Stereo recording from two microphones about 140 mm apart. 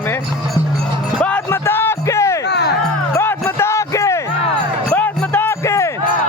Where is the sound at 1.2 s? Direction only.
15° left (ahead or behind).